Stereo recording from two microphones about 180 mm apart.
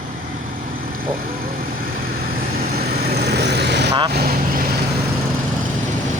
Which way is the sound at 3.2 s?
65° right (ahead or behind).